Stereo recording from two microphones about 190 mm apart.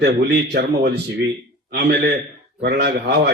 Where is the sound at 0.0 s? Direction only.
60° right (ahead or behind).